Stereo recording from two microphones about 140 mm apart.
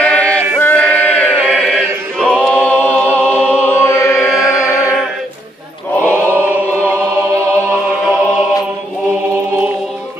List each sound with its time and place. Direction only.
0.0 s chant: 10° left (ahead or behind)
2.5 s music: 10° left (ahead or behind)
5.9 s chant: 15° left (ahead or behind)